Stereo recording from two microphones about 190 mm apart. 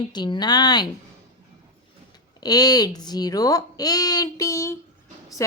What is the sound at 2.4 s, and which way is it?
Speech, 20° left (ahead or behind).